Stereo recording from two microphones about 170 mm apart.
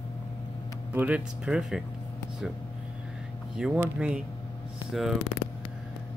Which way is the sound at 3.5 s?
5° right (ahead or behind).